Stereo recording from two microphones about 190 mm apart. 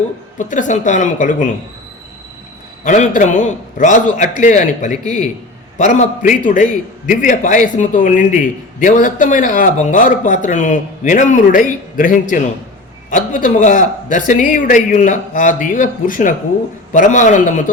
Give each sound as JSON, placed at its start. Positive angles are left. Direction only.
{"t": 0.3, "sound": "a man's voice", "side_deg": 40}
{"t": 2.8, "sound": "a man's voice", "side_deg": 40}